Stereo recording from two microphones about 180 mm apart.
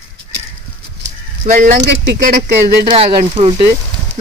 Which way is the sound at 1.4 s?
50° right (ahead or behind).